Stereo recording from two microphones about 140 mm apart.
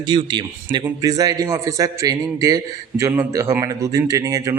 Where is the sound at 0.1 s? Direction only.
35° right (ahead or behind).